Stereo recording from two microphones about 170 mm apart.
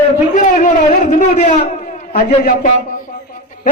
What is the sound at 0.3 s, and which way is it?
A man's voice, 45° left (ahead or behind).